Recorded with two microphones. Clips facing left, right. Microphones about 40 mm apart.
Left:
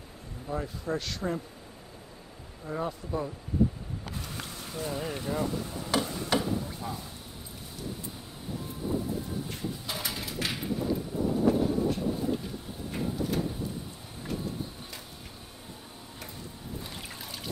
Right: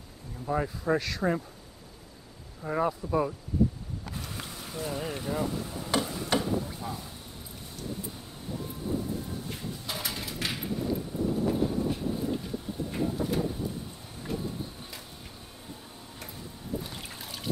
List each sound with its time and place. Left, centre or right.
0.9 s speech: centre
2.6 s speech: right
3.0 s speech: centre
4.1 s boat: centre
16.2 s boat: centre